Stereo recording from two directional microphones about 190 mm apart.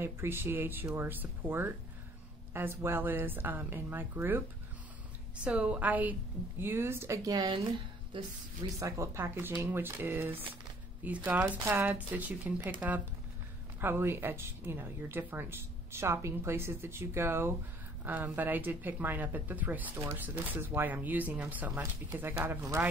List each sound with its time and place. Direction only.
0.0 s speech: 15° right (ahead or behind)
5.4 s a woman's voice: 5° right (ahead or behind)
13.7 s speech: 10° right (ahead or behind)